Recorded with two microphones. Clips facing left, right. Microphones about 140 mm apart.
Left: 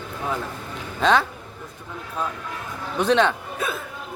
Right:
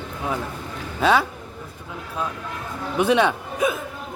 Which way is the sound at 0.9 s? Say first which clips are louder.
Right 1 dB; 10° right (ahead or behind).